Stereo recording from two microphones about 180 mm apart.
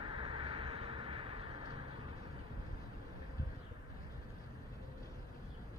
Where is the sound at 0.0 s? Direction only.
30° right (ahead or behind).